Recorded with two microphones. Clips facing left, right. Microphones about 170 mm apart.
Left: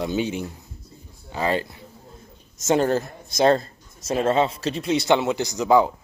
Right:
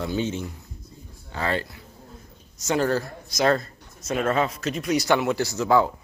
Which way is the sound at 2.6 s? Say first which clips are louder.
Left 3 dB; 20° left (ahead or behind).